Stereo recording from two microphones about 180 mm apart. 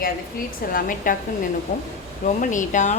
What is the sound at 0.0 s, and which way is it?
A woman's voice, 55° left (ahead or behind).